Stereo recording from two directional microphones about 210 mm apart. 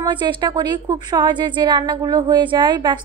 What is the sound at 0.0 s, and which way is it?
A woman's voice, 20° right (ahead or behind).